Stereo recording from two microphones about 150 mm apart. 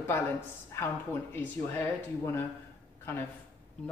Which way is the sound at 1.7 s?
15° left (ahead or behind).